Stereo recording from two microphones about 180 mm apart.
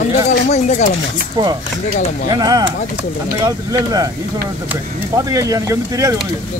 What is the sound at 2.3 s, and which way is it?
Speech, 20° right (ahead or behind).